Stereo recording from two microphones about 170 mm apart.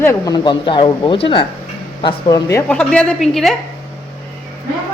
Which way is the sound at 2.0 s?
20° left (ahead or behind).